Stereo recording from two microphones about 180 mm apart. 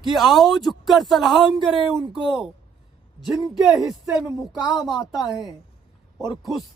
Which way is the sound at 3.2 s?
Centre (ahead or behind).